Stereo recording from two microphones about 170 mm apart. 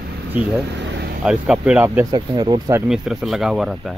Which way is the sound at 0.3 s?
Centre (ahead or behind).